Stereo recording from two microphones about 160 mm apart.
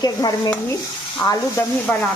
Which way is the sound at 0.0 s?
20° left (ahead or behind).